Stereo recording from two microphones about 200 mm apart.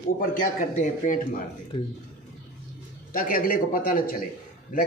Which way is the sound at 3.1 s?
45° left (ahead or behind).